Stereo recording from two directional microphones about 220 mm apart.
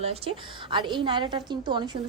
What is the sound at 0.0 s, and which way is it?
A woman's voice, 25° right (ahead or behind).